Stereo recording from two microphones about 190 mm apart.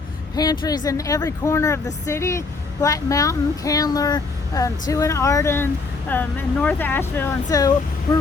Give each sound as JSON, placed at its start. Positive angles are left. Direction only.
{"t": 0.3, "sound": "speech", "side_deg": 20}